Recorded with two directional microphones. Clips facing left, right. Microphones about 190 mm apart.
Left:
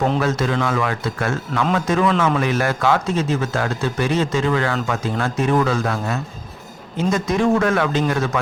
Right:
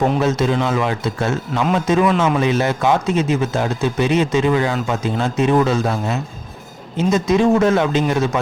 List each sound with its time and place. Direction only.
0.2 s a man's voice: 20° right (ahead or behind)